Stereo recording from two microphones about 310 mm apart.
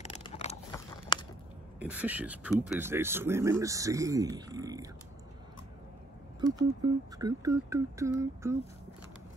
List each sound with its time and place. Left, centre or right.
0.0 s a sound: left
1.8 s speech: centre
6.4 s speech: centre